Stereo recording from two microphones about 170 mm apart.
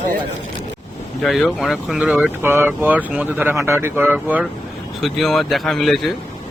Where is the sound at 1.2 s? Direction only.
Centre (ahead or behind).